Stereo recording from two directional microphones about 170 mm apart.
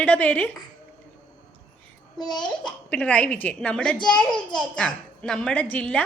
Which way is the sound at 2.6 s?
10° left (ahead or behind).